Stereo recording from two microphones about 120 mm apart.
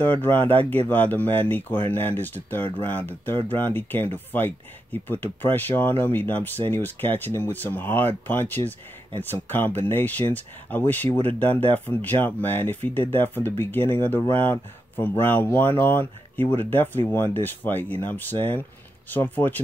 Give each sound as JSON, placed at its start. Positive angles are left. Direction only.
{"t": 0.0, "sound": "speech", "side_deg": 15}